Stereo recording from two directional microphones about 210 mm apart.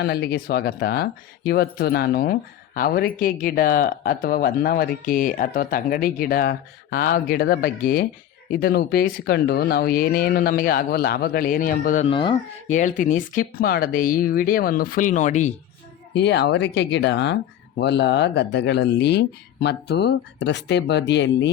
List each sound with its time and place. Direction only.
0.0 s speech: 50° left (ahead or behind)
12.0 s speech: 25° left (ahead or behind)
16.1 s speech: 55° left (ahead or behind)